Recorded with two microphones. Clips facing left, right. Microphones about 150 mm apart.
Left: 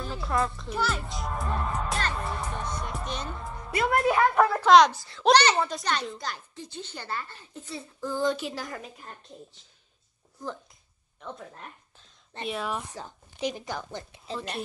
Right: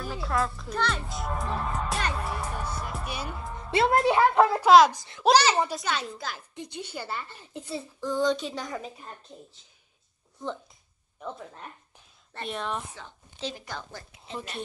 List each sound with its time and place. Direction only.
0.0 s a woman's voice: 5° right (ahead or behind)
2.2 s music: 5° right (ahead or behind)
3.7 s a woman's voice: 25° right (ahead or behind)
4.5 s a woman's voice: 10° right (ahead or behind)
4.9 s a woman's voice: 20° right (ahead or behind)
5.2 s a woman's voice: 5° right (ahead or behind)
6.5 s a woman's voice: 15° right (ahead or behind); by 8.9 s centre (ahead or behind)
12.4 s a woman's voice: centre (ahead or behind)
13.4 s speech: 15° left (ahead or behind)